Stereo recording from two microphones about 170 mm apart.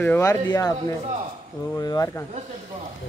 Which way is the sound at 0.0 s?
15° left (ahead or behind).